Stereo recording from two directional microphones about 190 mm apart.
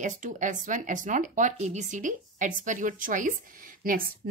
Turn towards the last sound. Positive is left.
turn(degrees=-45)  # may be behind; listen again after turning